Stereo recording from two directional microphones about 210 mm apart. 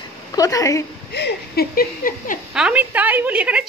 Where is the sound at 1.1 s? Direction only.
50° left (ahead or behind).